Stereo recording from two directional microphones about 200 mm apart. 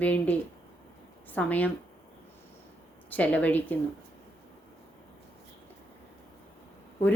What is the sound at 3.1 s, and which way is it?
Speech, 5° left (ahead or behind).